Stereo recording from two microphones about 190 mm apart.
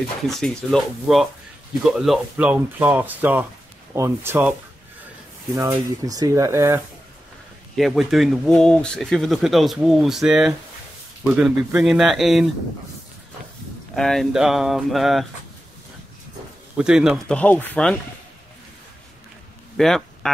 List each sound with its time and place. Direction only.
0.3 s speech: centre (ahead or behind); by 6.8 s 15° right (ahead or behind)
7.7 s speech: centre (ahead or behind)
13.9 s speech: centre (ahead or behind)
16.7 s speech: 5° right (ahead or behind)
19.8 s speech: 5° left (ahead or behind)